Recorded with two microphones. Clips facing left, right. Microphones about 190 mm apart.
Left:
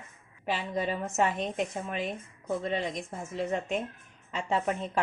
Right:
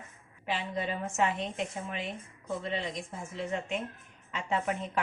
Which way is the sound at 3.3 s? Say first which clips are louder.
Left 4 dB; 45° left (ahead or behind).